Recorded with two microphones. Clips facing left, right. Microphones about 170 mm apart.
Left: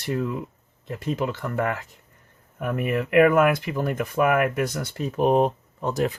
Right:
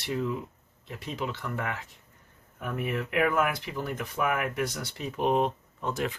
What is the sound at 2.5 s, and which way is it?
Speech, 65° left (ahead or behind).